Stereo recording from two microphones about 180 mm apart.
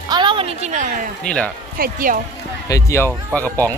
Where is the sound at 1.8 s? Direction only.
50° right (ahead or behind).